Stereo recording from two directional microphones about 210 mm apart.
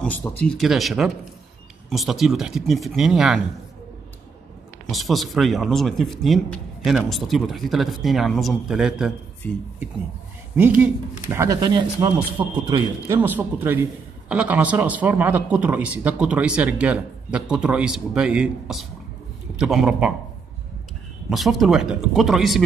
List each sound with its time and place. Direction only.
0.0 s a man's voice: 5° left (ahead or behind)
4.9 s a man's voice: centre (ahead or behind)
10.8 s a man's voice: 10° right (ahead or behind)
21.3 s a man's voice: centre (ahead or behind)